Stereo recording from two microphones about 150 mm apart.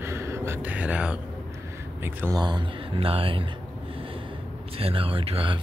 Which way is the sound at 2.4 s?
30° right (ahead or behind).